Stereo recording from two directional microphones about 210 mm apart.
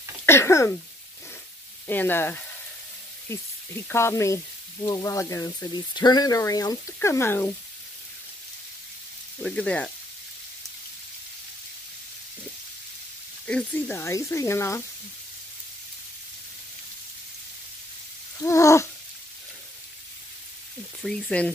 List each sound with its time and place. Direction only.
0.2 s speech: 10° left (ahead or behind)
1.9 s speech: 10° left (ahead or behind)
9.4 s frying: 5° left (ahead or behind)
13.5 s speech: 5° left (ahead or behind)
18.4 s speech: 15° left (ahead or behind)
21.0 s frying: 5° left (ahead or behind)